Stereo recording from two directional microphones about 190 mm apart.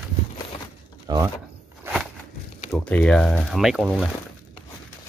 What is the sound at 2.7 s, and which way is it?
Speech, 5° left (ahead or behind).